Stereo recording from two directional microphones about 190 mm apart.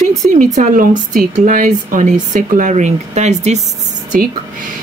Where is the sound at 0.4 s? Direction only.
40° right (ahead or behind).